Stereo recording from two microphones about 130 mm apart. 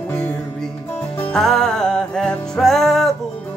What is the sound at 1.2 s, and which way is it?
Music, 5° left (ahead or behind).